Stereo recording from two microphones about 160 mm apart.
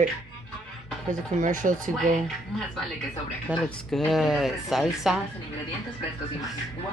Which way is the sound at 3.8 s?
Centre (ahead or behind).